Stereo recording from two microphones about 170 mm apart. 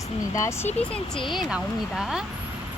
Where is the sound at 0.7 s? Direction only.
35° left (ahead or behind).